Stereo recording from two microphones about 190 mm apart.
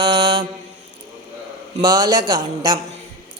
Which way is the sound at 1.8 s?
20° right (ahead or behind).